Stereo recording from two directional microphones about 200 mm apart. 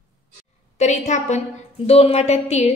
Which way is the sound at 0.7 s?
35° left (ahead or behind).